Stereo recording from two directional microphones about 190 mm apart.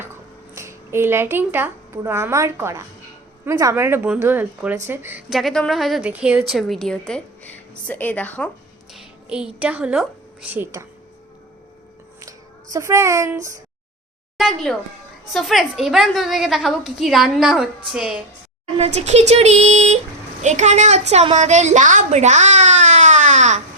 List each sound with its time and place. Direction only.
0.5 s a woman's voice: 15° right (ahead or behind)
5.3 s a woman's voice: centre (ahead or behind)
8.9 s speech: 5° right (ahead or behind)
12.7 s speech: 15° right (ahead or behind)
14.3 s a woman's voice: centre (ahead or behind)
18.8 s a woman's voice: 35° right (ahead or behind)